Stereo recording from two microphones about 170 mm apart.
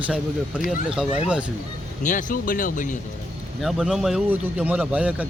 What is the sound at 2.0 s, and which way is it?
Speech, 50° left (ahead or behind).